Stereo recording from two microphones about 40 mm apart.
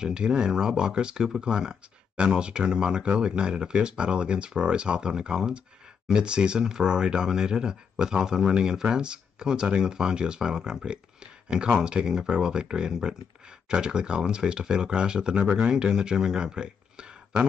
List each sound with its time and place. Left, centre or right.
0.0 s speech: centre